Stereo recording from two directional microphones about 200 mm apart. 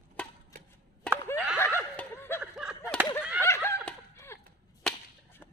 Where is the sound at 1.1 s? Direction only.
5° left (ahead or behind).